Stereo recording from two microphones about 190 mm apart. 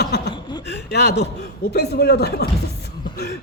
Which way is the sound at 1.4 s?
55° left (ahead or behind).